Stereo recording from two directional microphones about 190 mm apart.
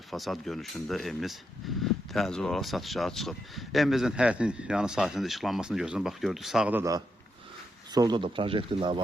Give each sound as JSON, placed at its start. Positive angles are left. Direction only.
{"t": 0.1, "sound": "speech", "side_deg": 0}